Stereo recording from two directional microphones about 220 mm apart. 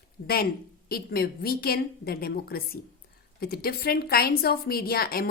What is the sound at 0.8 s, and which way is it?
A woman's voice, 45° left (ahead or behind).